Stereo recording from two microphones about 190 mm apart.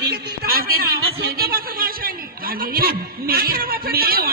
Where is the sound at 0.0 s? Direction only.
55° right (ahead or behind).